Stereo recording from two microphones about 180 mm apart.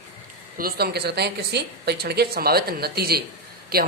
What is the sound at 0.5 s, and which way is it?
Speech, 55° right (ahead or behind).